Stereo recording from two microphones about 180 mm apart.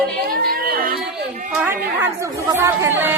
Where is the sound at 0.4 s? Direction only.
55° right (ahead or behind).